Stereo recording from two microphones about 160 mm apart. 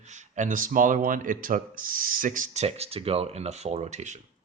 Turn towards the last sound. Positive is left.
turn(degrees=-45)  # may be behind; listen again after turning